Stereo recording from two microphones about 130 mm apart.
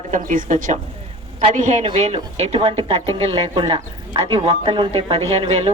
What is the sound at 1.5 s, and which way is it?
A woman's voice, 65° right (ahead or behind).